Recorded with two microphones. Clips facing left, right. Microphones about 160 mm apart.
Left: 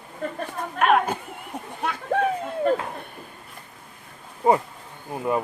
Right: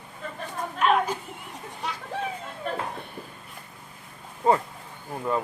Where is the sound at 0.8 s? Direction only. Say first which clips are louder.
Left 3 dB; 60° left (ahead or behind).